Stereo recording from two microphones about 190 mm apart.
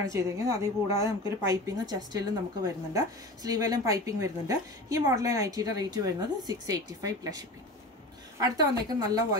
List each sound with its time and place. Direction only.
0.0 s a woman's voice: 15° right (ahead or behind)